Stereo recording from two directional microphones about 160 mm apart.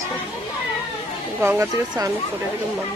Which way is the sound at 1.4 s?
20° right (ahead or behind).